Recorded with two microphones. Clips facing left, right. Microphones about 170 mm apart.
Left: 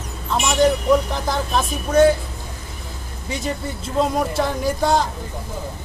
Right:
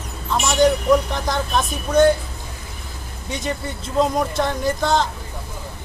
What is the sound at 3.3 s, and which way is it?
Speech, 5° left (ahead or behind).